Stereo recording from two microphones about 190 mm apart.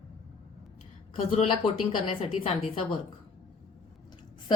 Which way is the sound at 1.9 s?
30° left (ahead or behind).